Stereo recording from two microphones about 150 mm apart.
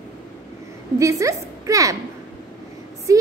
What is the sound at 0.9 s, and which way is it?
A woman's voice, 20° right (ahead or behind).